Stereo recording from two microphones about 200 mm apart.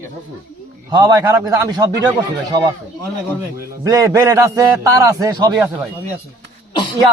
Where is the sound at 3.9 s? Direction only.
15° right (ahead or behind).